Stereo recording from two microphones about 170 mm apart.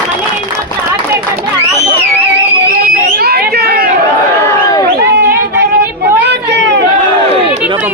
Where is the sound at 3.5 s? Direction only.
65° right (ahead or behind).